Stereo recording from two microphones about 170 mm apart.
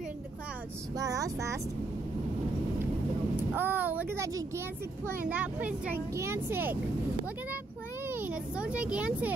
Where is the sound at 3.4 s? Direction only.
10° right (ahead or behind).